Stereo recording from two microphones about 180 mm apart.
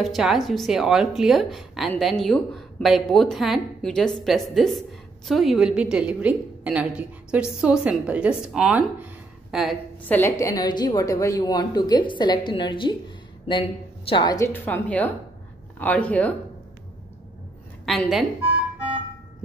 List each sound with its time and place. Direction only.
0.0 s a woman's voice: centre (ahead or behind)
10.0 s a woman's voice: 10° left (ahead or behind)
17.8 s a woman's voice: centre (ahead or behind)